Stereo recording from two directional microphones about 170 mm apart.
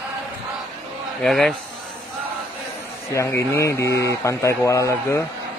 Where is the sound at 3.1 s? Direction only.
15° left (ahead or behind).